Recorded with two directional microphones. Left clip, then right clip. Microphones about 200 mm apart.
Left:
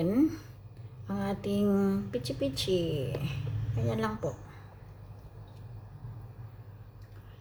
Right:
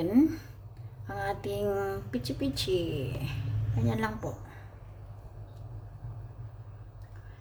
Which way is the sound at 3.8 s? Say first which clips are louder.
Even; 30° right (ahead or behind).